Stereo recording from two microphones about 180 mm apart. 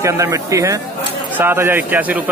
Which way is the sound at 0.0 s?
15° right (ahead or behind).